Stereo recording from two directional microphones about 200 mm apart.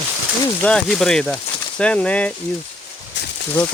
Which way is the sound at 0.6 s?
5° left (ahead or behind).